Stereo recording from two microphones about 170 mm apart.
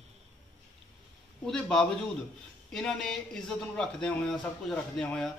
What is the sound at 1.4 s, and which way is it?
Speech, 5° left (ahead or behind).